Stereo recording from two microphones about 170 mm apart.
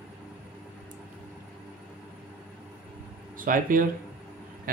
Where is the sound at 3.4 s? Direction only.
55° right (ahead or behind).